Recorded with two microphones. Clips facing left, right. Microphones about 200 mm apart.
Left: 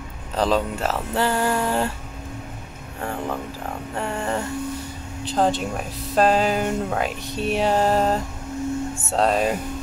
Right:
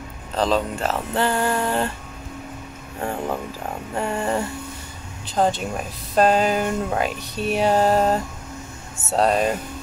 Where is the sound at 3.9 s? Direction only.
15° right (ahead or behind).